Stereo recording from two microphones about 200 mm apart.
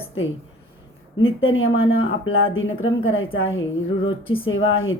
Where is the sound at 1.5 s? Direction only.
80° left.